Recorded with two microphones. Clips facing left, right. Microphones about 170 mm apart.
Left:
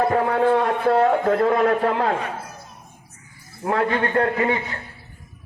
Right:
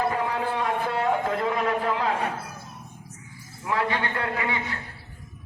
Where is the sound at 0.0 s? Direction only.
60° left (ahead or behind).